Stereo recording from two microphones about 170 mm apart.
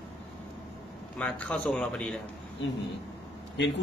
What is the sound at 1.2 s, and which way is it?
A man's voice, 5° left (ahead or behind).